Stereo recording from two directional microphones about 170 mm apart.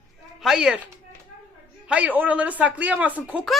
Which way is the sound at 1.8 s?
10° right (ahead or behind).